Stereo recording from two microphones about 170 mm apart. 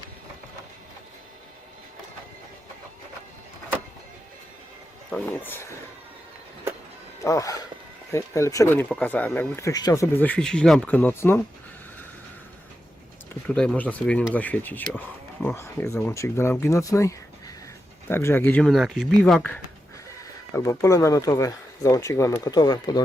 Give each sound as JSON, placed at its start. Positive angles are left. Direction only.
{"t": 5.4, "sound": "speech", "side_deg": 10}
{"t": 7.2, "sound": "speech", "side_deg": 20}
{"t": 13.5, "sound": "speech", "side_deg": 5}
{"t": 19.2, "sound": "speech", "side_deg": 10}
{"t": 20.6, "sound": "speech", "side_deg": 20}